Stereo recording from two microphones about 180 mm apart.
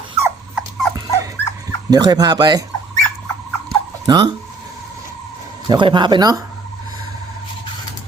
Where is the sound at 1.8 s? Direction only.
20° right (ahead or behind).